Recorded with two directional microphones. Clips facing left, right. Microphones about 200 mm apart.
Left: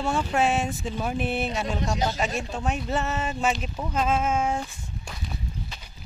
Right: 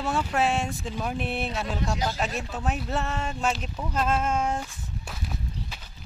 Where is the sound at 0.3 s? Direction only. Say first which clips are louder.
Left 2 dB; centre (ahead or behind).